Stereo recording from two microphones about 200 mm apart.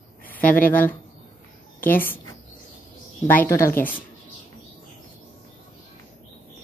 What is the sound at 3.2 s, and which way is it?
Speech, 10° left (ahead or behind).